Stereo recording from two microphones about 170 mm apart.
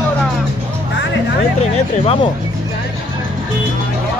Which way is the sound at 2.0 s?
35° left (ahead or behind).